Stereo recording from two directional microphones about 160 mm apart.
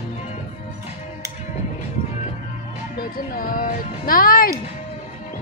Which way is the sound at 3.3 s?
60° left (ahead or behind).